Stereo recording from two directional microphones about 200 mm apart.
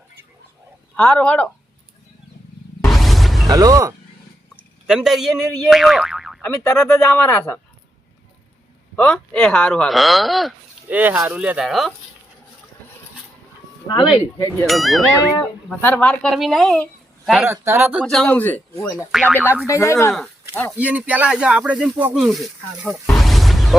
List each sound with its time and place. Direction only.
0.9 s speech: 5° left (ahead or behind)
2.8 s a sound: centre (ahead or behind)
3.5 s speech: 15° right (ahead or behind)
4.9 s speech: 5° right (ahead or behind)
6.7 s speech: 10° left (ahead or behind)
9.0 s speech: 5° left (ahead or behind)
14.3 s speech: 15° left (ahead or behind)
14.7 s speech: centre (ahead or behind)
15.2 s speech: 15° left (ahead or behind)
17.4 s speech: 10° right (ahead or behind)
18.0 s speech: centre (ahead or behind)
20.7 s speech: 5° right (ahead or behind)
23.1 s music: centre (ahead or behind)